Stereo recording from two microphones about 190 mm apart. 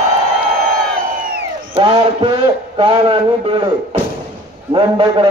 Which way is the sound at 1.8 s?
30° right (ahead or behind).